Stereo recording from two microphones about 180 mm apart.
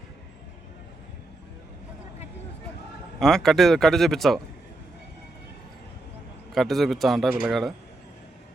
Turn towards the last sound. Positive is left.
turn(degrees=0)  # may be behind; listen again after turning